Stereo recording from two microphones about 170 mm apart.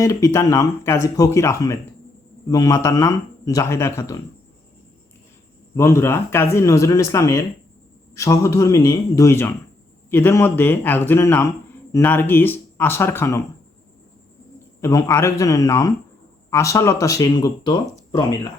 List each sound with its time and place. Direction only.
0.0 s speech: 20° left (ahead or behind)
5.7 s speech: 15° left (ahead or behind)
14.8 s speech: 20° left (ahead or behind)